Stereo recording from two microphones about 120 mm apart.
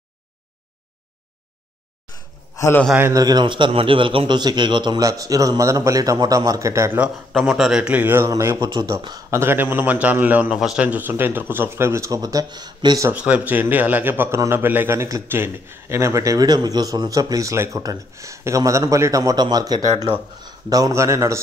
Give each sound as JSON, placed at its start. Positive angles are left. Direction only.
{"t": 2.5, "sound": "a sound", "side_deg": 25}
{"t": 3.0, "sound": "a man's voice", "side_deg": -30}
{"t": 7.3, "sound": "a man's voice", "side_deg": 0}
{"t": 8.5, "sound": "a man's voice", "side_deg": -40}
{"t": 9.3, "sound": "a man's voice", "side_deg": -20}
{"t": 13.1, "sound": "a man's voice", "side_deg": -10}